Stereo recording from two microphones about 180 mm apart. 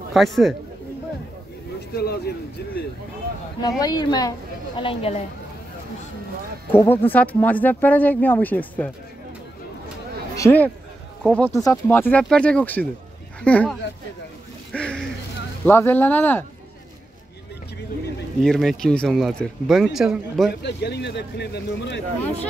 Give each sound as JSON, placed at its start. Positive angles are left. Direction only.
{"t": 0.1, "sound": "speech", "side_deg": 0}
{"t": 2.0, "sound": "a sound", "side_deg": 60}
{"t": 3.8, "sound": "a woman's voice", "side_deg": 20}
{"t": 6.7, "sound": "speech", "side_deg": 10}
{"t": 10.3, "sound": "speech", "side_deg": 10}
{"t": 14.7, "sound": "a sound", "side_deg": 5}
{"t": 15.6, "sound": "speech", "side_deg": 10}
{"t": 18.4, "sound": "speech", "side_deg": 0}
{"t": 20.6, "sound": "speech", "side_deg": 70}